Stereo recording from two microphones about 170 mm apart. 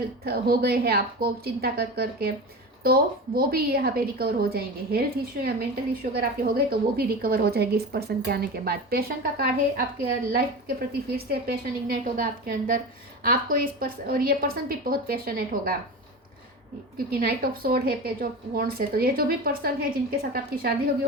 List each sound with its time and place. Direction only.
0.3 s a woman's voice: 65° right (ahead or behind)
17.1 s a woman's voice: 60° right (ahead or behind)